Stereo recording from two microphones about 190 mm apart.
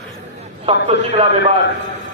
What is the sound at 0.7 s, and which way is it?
Speech, 30° right (ahead or behind).